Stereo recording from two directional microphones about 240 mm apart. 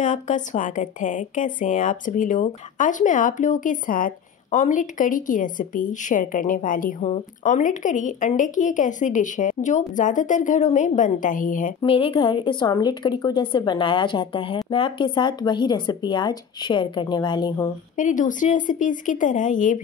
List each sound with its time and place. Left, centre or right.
0.0 s a woman's voice: left
11.8 s a woman's voice: left
17.9 s a woman's voice: left